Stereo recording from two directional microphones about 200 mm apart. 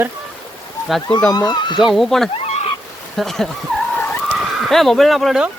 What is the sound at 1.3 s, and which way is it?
Speech, 20° left (ahead or behind).